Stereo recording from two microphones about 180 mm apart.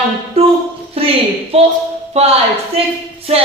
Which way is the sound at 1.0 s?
35° right (ahead or behind).